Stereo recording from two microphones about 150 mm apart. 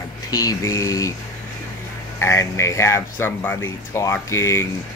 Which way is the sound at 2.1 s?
20° left (ahead or behind).